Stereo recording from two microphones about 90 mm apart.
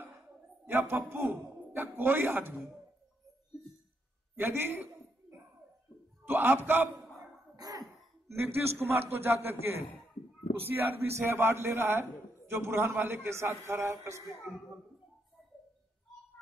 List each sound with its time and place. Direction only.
0.7 s a man's voice: 25° right (ahead or behind)
4.4 s a man's voice: 25° right (ahead or behind)
6.2 s a man's voice: 20° right (ahead or behind)
7.5 s cough: 45° right (ahead or behind)
8.3 s a man's voice: 30° right (ahead or behind)